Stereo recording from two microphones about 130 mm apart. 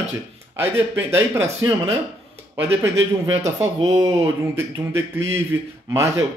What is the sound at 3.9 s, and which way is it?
Speech, 30° right (ahead or behind).